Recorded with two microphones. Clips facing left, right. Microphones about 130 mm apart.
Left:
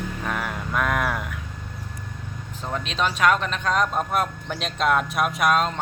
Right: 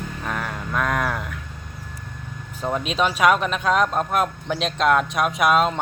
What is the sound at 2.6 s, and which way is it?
Speech, 10° right (ahead or behind).